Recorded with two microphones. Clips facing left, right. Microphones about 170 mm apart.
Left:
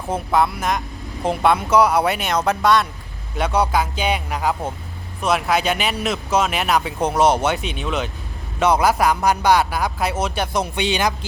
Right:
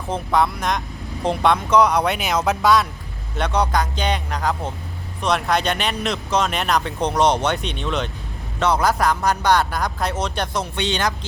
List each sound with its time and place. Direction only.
0.1 s speech: 5° left (ahead or behind)